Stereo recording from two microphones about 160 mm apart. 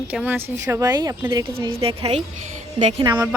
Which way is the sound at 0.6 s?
20° right (ahead or behind).